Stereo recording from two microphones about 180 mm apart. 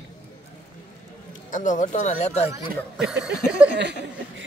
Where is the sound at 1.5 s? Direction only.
45° left (ahead or behind).